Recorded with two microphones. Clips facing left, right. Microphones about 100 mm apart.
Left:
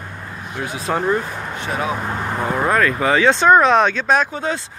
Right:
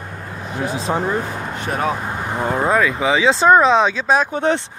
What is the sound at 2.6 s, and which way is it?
Speech, 10° right (ahead or behind).